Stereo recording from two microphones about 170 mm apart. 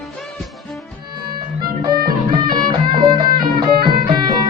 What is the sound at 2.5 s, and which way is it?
Music, 25° right (ahead or behind).